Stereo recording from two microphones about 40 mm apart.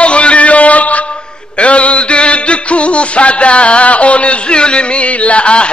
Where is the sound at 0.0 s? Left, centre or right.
Left.